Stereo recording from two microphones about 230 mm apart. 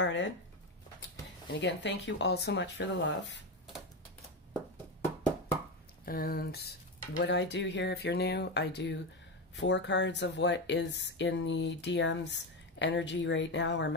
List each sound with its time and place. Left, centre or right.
0.0 s speech: left
1.5 s speech: left
6.0 s speech: left